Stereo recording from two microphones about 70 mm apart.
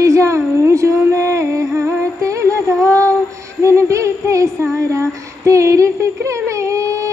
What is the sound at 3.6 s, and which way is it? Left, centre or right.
Child singing, right.